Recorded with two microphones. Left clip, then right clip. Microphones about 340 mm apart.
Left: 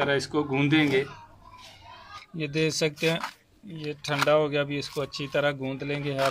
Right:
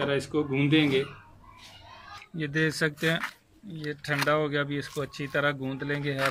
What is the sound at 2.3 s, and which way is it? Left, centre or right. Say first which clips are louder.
Speech: left 1 dB; centre.